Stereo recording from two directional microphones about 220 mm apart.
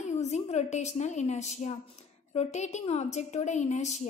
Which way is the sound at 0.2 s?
30° left (ahead or behind).